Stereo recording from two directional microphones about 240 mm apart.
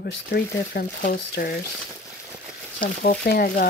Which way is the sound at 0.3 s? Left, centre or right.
Left.